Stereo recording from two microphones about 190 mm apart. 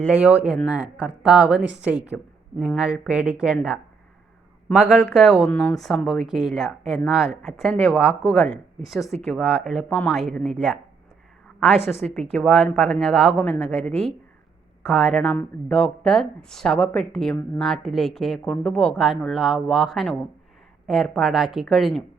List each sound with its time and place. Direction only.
0.1 s a woman's voice: 5° right (ahead or behind); by 8.5 s 10° left (ahead or behind)
8.8 s a woman's voice: centre (ahead or behind)
11.9 s a woman's voice: 5° left (ahead or behind)